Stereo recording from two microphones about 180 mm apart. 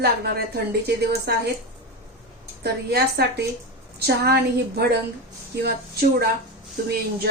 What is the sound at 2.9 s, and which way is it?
Speech, 60° right (ahead or behind).